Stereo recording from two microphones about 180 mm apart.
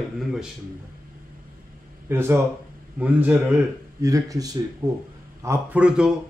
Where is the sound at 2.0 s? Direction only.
15° right (ahead or behind).